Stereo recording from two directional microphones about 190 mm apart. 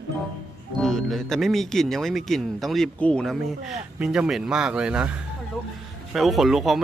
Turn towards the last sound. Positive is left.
turn(degrees=0)  # may be behind; listen again after turning